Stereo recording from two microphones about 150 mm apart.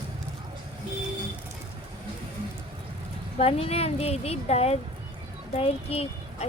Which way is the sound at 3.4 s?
40° left (ahead or behind).